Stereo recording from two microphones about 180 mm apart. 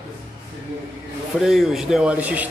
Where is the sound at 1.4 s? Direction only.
Centre (ahead or behind).